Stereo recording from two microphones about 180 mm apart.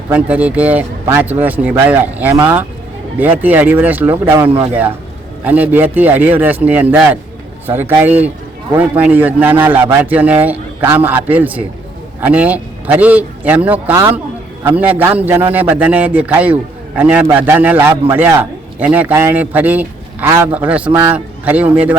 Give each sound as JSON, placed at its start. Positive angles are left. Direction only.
{"t": 0.1, "sound": "a man's voice", "side_deg": -10}